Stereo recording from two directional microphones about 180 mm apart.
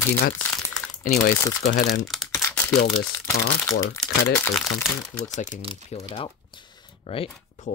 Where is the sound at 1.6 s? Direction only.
45° left (ahead or behind).